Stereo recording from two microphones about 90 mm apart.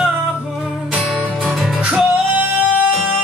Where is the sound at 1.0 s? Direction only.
Centre (ahead or behind).